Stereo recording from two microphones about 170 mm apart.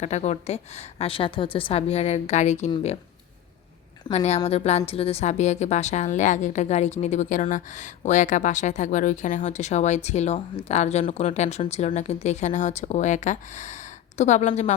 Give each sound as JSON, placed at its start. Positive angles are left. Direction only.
{"t": 0.0, "sound": "a woman's voice", "side_deg": 40}
{"t": 4.1, "sound": "a woman's voice", "side_deg": 40}